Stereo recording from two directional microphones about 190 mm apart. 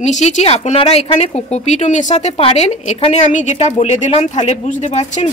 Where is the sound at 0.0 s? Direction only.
35° left (ahead or behind).